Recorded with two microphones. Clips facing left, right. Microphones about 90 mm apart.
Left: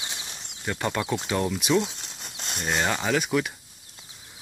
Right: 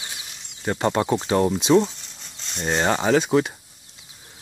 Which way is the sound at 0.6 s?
35° right (ahead or behind).